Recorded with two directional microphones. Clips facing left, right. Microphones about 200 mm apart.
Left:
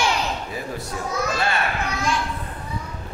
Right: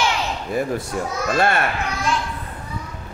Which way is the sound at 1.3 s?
55° right (ahead or behind).